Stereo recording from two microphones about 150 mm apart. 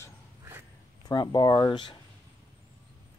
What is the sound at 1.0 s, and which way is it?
Speech, 30° left (ahead or behind).